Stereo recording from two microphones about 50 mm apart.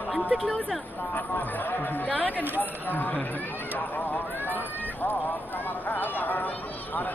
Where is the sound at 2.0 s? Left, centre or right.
Left.